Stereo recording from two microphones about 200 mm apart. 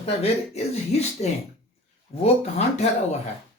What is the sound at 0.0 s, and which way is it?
Speech, 30° left (ahead or behind).